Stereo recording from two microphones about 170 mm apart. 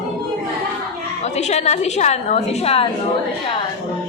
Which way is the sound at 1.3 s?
40° left (ahead or behind).